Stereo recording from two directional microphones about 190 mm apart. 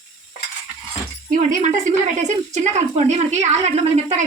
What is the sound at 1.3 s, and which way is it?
A woman's voice, 40° right (ahead or behind).